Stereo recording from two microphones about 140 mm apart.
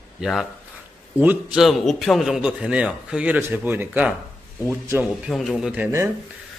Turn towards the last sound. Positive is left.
turn(degrees=-5)  # may be behind; listen again after turning